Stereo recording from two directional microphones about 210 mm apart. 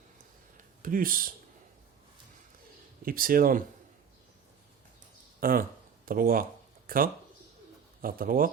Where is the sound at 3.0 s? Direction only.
45° right (ahead or behind).